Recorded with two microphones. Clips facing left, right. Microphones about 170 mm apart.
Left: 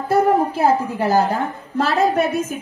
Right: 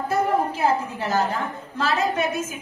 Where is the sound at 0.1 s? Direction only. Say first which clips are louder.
Left 7 dB; 35° left (ahead or behind).